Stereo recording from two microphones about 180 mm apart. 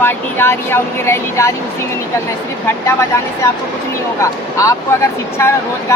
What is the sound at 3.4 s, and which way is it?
Speech, 15° left (ahead or behind).